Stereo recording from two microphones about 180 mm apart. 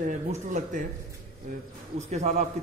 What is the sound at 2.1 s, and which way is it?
Speech, 40° right (ahead or behind).